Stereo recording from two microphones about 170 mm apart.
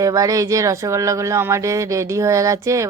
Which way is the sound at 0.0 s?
20° right (ahead or behind).